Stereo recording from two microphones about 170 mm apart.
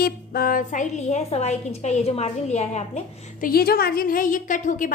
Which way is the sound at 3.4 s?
65° left (ahead or behind).